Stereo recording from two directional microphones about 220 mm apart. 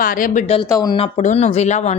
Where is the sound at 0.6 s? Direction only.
15° left (ahead or behind).